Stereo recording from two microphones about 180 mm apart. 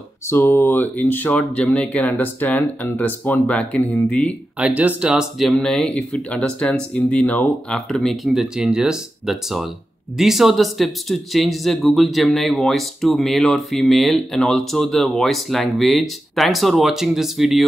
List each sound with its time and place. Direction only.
0.3 s speech: 15° left (ahead or behind)
4.6 s speech: 10° right (ahead or behind)